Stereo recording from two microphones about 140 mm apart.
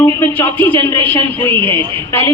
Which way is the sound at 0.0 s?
20° left (ahead or behind).